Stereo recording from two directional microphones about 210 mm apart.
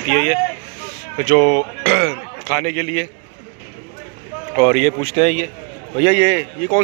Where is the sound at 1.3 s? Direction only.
Centre (ahead or behind).